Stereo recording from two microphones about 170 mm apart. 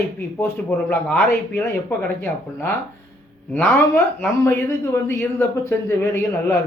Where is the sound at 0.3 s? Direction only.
15° left (ahead or behind).